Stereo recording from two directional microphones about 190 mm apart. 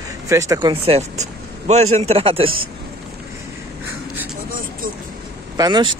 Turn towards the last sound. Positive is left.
turn(degrees=-25)  # may be behind; listen again after turning